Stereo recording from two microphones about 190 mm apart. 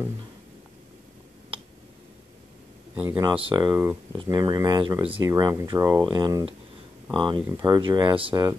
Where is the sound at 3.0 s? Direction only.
10° right (ahead or behind).